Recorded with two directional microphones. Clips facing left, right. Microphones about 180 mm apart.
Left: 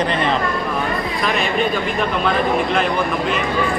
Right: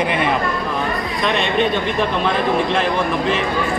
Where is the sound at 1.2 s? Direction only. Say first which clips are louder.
Right 2 dB; 25° right (ahead or behind).